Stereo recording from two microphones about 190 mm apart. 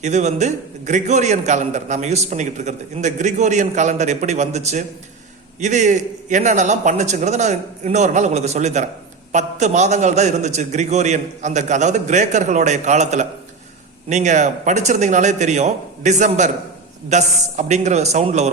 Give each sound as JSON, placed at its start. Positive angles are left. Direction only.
{"t": 0.0, "sound": "a man's voice", "side_deg": -40}